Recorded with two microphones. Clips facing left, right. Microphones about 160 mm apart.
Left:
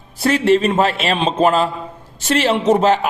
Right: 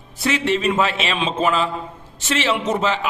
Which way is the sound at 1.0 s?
45° left (ahead or behind).